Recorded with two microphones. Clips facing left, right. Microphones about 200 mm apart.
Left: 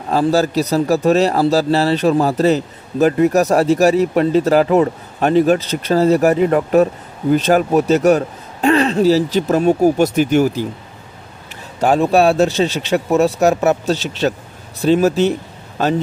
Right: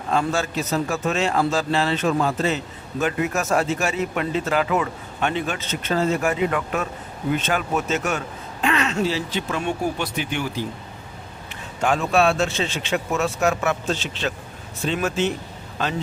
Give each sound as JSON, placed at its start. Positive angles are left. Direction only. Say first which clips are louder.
{"t": 0.1, "sound": "a man's voice", "louder": "left 8 dB", "side_deg": 35}
{"t": 11.8, "sound": "a man's voice", "louder": "left 7 dB", "side_deg": 35}